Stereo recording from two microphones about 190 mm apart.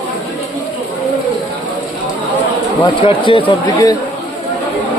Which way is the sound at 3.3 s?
25° left (ahead or behind).